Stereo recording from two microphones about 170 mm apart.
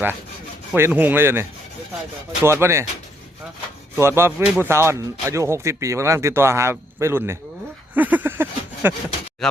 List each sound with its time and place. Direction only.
0.7 s speech: 10° right (ahead or behind)
3.9 s speech: 15° right (ahead or behind)
7.9 s a sound: 10° right (ahead or behind)
9.4 s speech: centre (ahead or behind)